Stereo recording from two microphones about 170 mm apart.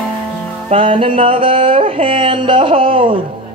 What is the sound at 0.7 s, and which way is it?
Music, 30° right (ahead or behind).